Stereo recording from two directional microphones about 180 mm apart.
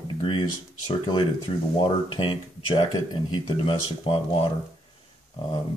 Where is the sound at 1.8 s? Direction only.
30° left (ahead or behind).